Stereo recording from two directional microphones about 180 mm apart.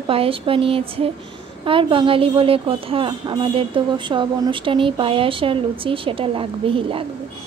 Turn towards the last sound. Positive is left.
turn(degrees=-30)  # may be behind; listen again after turning